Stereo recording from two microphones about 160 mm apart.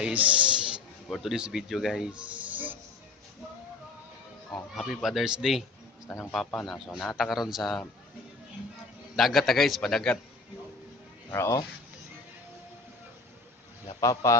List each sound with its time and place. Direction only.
0.0 s speech: 10° right (ahead or behind)
4.7 s a man's voice: centre (ahead or behind)
9.1 s a man's voice: centre (ahead or behind)
11.3 s speech: 20° left (ahead or behind)
14.0 s a man's voice: 20° left (ahead or behind)